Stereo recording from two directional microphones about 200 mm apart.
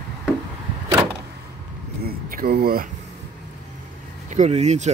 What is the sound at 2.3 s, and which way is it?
Speech, 45° right (ahead or behind).